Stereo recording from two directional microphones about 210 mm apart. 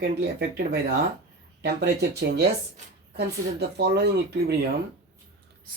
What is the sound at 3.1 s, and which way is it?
Speech, 50° right (ahead or behind).